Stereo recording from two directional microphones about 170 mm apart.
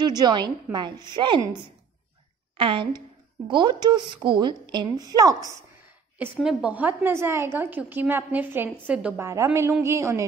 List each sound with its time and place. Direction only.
0.0 s a woman's voice: 25° right (ahead or behind)
6.3 s a woman's voice: 5° right (ahead or behind)